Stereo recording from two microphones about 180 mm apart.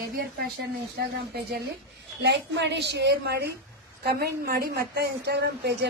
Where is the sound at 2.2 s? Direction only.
75° right (ahead or behind).